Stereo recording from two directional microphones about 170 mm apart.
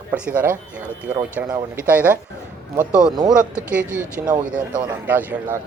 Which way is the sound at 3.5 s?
10° right (ahead or behind).